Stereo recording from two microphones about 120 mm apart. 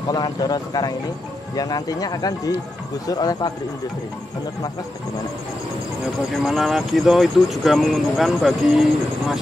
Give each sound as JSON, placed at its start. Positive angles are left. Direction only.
{"t": 0.1, "sound": "speech", "side_deg": 35}
{"t": 6.4, "sound": "speech", "side_deg": 0}